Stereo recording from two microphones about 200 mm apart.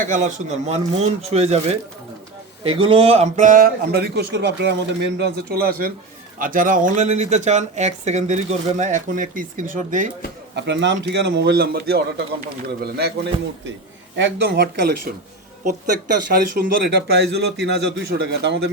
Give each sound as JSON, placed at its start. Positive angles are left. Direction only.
{"t": 0.1, "sound": "speech", "side_deg": -40}
{"t": 10.5, "sound": "speech", "side_deg": -60}